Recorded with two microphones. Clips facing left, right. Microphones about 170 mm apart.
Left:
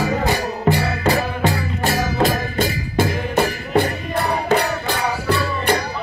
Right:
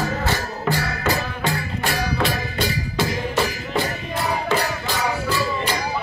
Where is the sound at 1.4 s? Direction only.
40° left (ahead or behind).